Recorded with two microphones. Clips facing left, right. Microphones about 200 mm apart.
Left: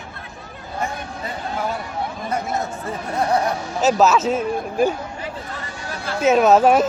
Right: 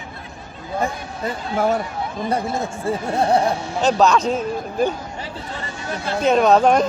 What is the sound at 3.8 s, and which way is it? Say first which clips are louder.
A man's voice: even; 5° left (ahead or behind).